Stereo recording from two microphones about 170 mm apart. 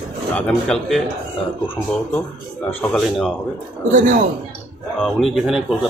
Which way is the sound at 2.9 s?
5° left (ahead or behind).